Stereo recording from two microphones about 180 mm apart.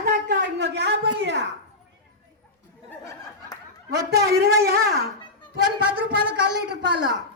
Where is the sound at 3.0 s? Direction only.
15° left (ahead or behind).